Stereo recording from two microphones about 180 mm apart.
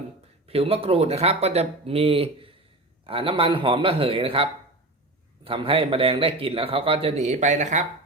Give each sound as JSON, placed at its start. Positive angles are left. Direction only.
{"t": 0.4, "sound": "a man's voice", "side_deg": -35}
{"t": 5.5, "sound": "a man's voice", "side_deg": -30}